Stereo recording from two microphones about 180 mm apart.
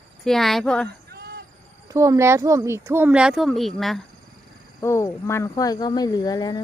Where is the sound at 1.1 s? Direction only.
60° right (ahead or behind).